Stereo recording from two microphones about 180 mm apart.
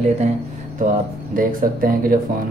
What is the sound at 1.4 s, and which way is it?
Speech, 50° right (ahead or behind).